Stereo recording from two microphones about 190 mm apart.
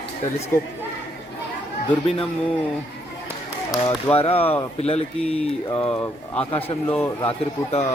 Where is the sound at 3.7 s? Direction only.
Centre (ahead or behind).